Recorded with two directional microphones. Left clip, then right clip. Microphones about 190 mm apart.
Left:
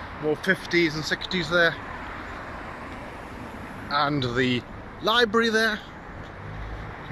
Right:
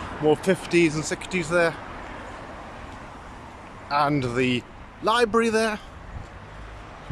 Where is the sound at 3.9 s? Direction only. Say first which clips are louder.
Right 2 dB; 10° right (ahead or behind).